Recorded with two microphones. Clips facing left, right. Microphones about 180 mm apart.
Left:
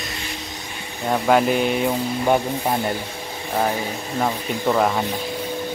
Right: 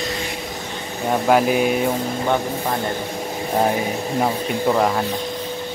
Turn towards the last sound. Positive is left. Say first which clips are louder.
# right 1 dB
turn(degrees=0)  # may be behind; listen again after turning